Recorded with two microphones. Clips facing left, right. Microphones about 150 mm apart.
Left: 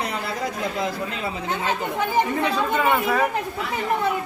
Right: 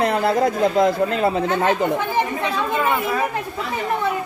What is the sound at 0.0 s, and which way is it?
Speech, 55° right (ahead or behind).